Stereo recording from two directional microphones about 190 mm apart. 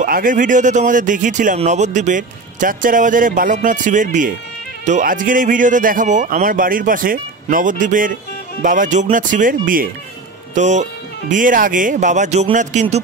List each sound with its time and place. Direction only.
0.0 s a man's voice: 45° right (ahead or behind)